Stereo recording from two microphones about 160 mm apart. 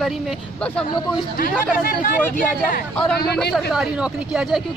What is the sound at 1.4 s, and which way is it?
Speech, 65° left (ahead or behind).